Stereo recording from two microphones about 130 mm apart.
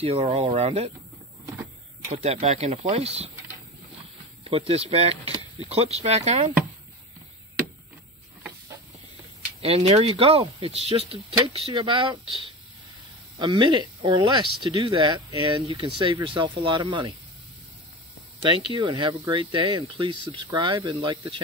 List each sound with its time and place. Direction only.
0.0 s speech: 50° right (ahead or behind)
2.0 s speech: 50° right (ahead or behind)
4.5 s speech: 50° right (ahead or behind)
9.6 s speech: 50° right (ahead or behind); by 17.1 s 30° right (ahead or behind)
18.8 s speech: 35° right (ahead or behind)